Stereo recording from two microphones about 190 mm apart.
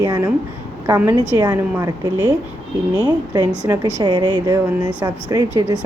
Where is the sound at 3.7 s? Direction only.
20° right (ahead or behind).